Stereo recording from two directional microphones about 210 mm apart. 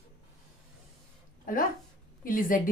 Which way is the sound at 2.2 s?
40° left (ahead or behind).